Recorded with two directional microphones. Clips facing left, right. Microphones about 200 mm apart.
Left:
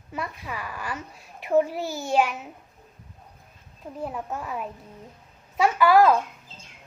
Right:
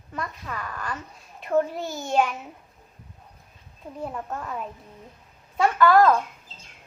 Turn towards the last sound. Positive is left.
turn(degrees=10)  # may be behind; listen again after turning